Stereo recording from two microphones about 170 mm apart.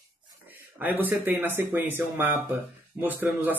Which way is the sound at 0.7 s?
10° right (ahead or behind).